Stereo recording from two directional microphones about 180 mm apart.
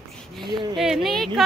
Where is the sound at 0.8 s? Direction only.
Centre (ahead or behind).